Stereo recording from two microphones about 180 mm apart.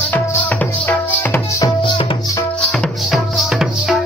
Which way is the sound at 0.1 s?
10° left (ahead or behind).